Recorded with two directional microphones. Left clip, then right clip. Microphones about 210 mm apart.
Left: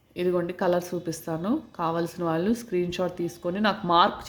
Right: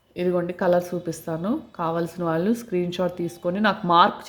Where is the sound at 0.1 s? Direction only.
5° right (ahead or behind).